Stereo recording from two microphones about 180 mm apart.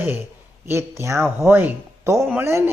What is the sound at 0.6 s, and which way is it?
Speech, 15° right (ahead or behind).